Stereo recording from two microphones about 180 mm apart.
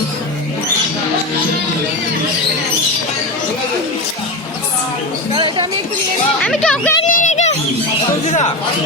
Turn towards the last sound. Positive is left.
turn(degrees=40)  # may be behind; listen again after turning